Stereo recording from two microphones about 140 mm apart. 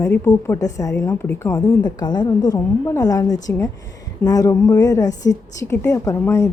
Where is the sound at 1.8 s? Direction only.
30° left (ahead or behind).